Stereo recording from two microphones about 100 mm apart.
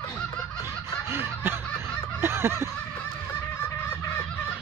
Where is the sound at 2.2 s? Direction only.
25° right (ahead or behind).